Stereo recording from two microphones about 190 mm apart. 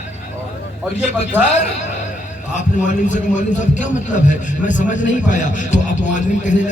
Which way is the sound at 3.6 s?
40° left (ahead or behind).